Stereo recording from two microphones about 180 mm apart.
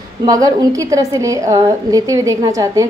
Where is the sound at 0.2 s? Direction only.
20° right (ahead or behind).